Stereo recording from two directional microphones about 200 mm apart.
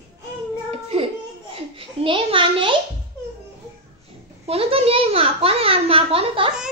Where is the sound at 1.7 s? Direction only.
25° right (ahead or behind).